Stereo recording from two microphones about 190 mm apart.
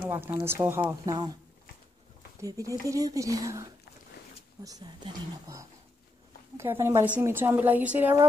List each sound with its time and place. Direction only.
0.1 s a woman's voice: 10° right (ahead or behind)
2.4 s a woman's voice: 15° right (ahead or behind)
4.6 s a woman's voice: 20° right (ahead or behind)